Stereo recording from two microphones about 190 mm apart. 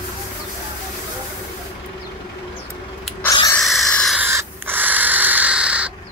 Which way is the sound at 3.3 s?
20° left (ahead or behind).